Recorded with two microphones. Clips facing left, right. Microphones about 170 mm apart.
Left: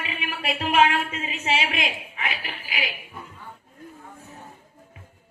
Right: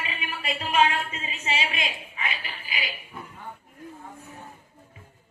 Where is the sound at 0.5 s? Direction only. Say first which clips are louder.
Left 3 dB; 75° left (ahead or behind); by 2.8 s 90° left.